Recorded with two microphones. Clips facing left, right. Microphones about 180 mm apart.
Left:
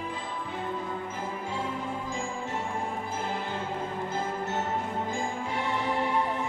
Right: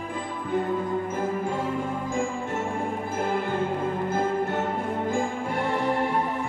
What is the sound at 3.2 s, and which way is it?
Music, 55° right (ahead or behind).